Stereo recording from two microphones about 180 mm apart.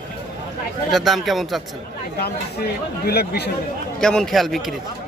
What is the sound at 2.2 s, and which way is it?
Speech, 60° left (ahead or behind).